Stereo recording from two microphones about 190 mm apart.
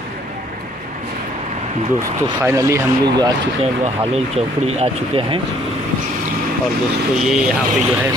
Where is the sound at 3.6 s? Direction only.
35° right (ahead or behind).